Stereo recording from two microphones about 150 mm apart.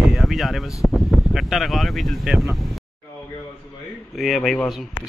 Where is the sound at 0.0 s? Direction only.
Centre (ahead or behind).